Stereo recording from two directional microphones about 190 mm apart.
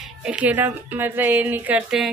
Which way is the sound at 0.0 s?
5° right (ahead or behind).